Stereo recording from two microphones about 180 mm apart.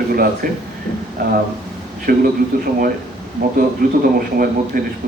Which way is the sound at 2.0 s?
55° right (ahead or behind).